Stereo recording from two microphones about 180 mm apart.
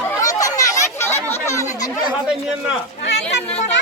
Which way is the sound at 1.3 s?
15° left (ahead or behind).